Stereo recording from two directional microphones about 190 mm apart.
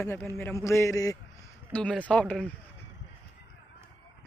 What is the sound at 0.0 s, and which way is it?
A man's voice, 10° left (ahead or behind).